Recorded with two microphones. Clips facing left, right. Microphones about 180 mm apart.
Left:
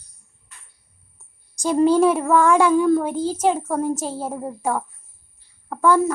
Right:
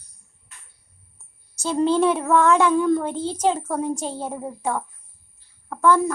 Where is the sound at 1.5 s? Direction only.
15° left (ahead or behind).